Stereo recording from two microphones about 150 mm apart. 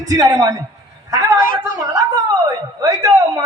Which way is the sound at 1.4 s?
65° left (ahead or behind).